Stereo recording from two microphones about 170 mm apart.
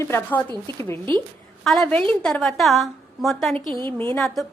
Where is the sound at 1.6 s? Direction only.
5° left (ahead or behind).